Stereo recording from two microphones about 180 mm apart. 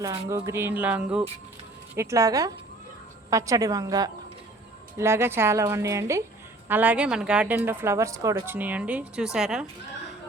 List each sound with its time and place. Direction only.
0.0 s a woman's voice: 20° right (ahead or behind); by 9.6 s 5° right (ahead or behind)